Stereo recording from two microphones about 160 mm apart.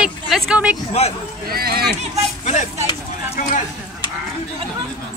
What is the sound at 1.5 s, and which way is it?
Speech, 70° right (ahead or behind).